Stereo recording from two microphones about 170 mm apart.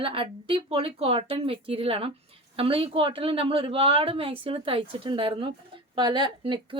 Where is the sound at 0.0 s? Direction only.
30° right (ahead or behind).